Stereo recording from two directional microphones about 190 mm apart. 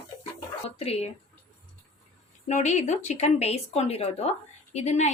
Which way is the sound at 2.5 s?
40° left (ahead or behind).